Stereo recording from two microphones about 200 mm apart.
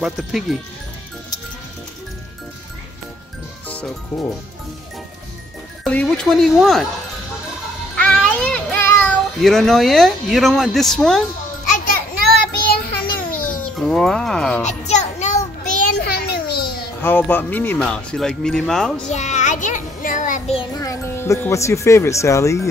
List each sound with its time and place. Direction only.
0.0 s speech: centre (ahead or behind)
3.6 s speech: 5° left (ahead or behind)
5.9 s speech: 5° left (ahead or behind)
7.9 s music: 5° left (ahead or behind)
9.4 s speech: centre (ahead or behind)
11.8 s child singing: 45° left (ahead or behind)
13.7 s speech: centre (ahead or behind)
14.6 s child singing: 35° left (ahead or behind)
16.0 s babbling: 50° left (ahead or behind)
17.0 s speech: 10° left (ahead or behind)
19.0 s child singing: 35° left (ahead or behind)
20.7 s speech: 15° left (ahead or behind)